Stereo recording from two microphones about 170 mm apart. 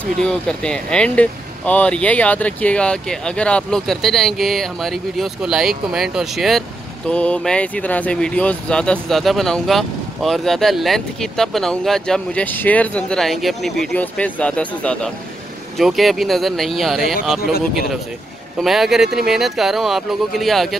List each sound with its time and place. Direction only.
0.0 s speech: 5° left (ahead or behind)
17.4 s speech: 65° left (ahead or behind)
18.6 s speech: centre (ahead or behind)